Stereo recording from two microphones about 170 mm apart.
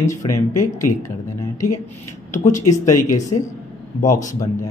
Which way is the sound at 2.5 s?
20° left (ahead or behind).